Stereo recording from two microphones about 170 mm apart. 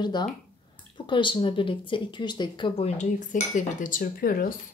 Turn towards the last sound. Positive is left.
turn(degrees=55)  # may be behind; listen again after turning